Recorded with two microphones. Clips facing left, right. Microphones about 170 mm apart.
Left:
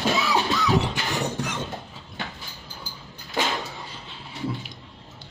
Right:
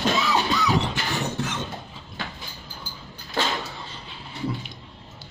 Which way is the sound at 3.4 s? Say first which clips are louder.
Even; 15° left (ahead or behind).